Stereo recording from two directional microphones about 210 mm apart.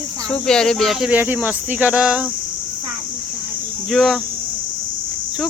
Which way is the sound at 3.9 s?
Centre (ahead or behind).